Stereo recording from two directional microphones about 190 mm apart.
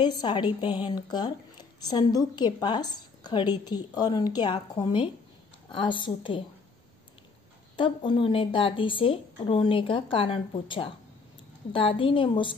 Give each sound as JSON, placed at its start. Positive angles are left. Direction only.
{"t": 0.0, "sound": "a woman's voice", "side_deg": 25}
{"t": 7.7, "sound": "a woman's voice", "side_deg": 25}